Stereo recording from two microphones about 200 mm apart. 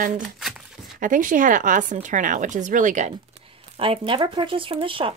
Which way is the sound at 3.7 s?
25° right (ahead or behind).